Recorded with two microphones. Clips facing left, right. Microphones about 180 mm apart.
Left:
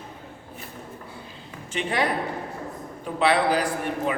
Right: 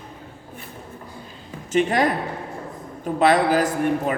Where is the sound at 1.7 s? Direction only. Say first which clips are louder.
Right 7 dB; 45° right (ahead or behind).